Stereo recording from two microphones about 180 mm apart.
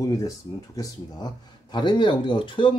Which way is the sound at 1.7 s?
25° left (ahead or behind).